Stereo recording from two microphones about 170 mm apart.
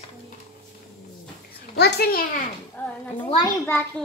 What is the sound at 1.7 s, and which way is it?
Speech, 70° left (ahead or behind).